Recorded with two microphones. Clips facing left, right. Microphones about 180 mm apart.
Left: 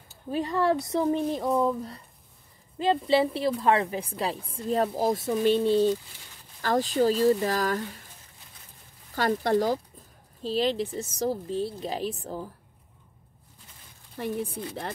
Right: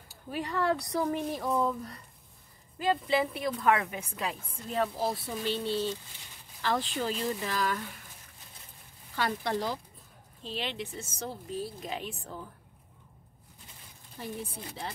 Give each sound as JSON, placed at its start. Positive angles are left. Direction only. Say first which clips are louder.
{"t": 0.3, "sound": "a woman's voice", "louder": "left 5 dB", "side_deg": 25}
{"t": 9.1, "sound": "a woman's voice", "louder": "left 7 dB", "side_deg": 45}
{"t": 14.1, "sound": "a woman's voice", "louder": "left 8 dB", "side_deg": 60}